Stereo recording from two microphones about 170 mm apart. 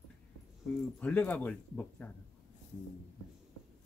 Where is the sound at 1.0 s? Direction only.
10° left (ahead or behind).